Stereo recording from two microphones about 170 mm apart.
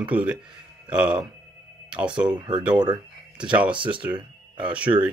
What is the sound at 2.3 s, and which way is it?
Speech, 25° right (ahead or behind).